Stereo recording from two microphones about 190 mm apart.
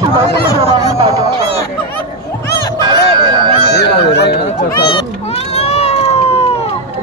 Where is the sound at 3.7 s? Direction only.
60° left (ahead or behind).